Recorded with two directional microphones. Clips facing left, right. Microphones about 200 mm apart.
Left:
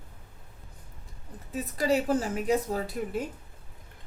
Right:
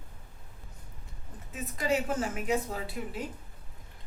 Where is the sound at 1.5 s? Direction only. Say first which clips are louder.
Left 4 dB; 35° left (ahead or behind).